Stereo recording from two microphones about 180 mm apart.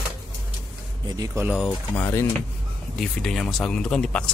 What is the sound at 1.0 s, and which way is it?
Speech, 20° right (ahead or behind).